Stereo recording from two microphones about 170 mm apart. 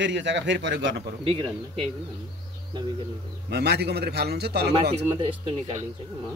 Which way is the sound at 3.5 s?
75° right (ahead or behind).